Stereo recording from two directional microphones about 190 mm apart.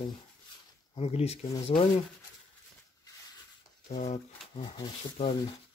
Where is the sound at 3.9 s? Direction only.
35° left (ahead or behind).